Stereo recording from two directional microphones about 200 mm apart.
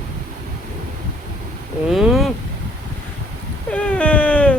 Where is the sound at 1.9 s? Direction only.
Centre (ahead or behind).